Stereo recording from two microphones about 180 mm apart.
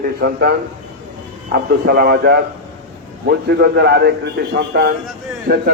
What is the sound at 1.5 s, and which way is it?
A man's voice, 60° right (ahead or behind).